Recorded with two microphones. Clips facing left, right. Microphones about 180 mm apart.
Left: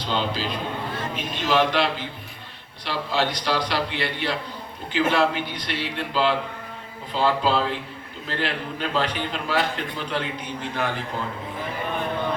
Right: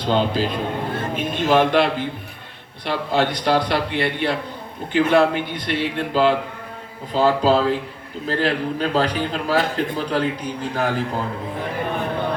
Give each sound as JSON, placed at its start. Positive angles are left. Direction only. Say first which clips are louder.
{"t": 0.0, "sound": "a man's voice", "louder": "right 6 dB", "side_deg": -50}